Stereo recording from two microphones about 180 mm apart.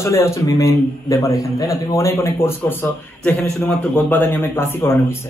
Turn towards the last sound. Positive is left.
turn(degrees=15)  # may be behind; listen again after turning